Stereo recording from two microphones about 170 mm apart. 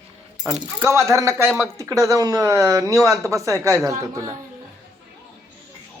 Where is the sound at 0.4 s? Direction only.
15° right (ahead or behind).